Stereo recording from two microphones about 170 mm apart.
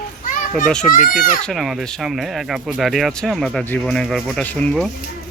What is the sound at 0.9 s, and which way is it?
Speech, 50° left (ahead or behind).